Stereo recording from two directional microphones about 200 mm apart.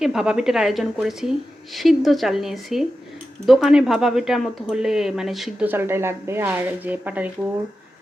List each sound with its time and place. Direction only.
0.0 s speech: 5° right (ahead or behind)